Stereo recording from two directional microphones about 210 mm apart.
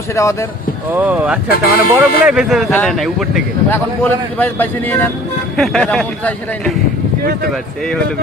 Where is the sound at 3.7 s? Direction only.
10° left (ahead or behind).